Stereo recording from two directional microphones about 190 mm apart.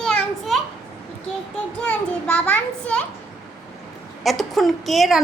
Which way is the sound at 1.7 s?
5° left (ahead or behind).